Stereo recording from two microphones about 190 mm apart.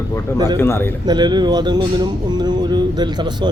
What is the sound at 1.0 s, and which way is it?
Speech, 20° right (ahead or behind).